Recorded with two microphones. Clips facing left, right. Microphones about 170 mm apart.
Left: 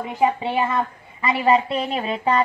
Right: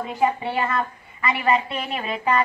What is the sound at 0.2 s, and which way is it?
A woman's voice, 20° left (ahead or behind).